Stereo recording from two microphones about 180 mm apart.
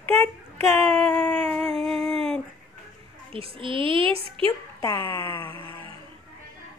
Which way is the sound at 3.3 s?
30° right (ahead or behind).